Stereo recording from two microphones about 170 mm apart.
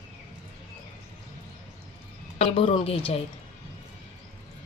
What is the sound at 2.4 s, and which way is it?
Speech, 35° left (ahead or behind).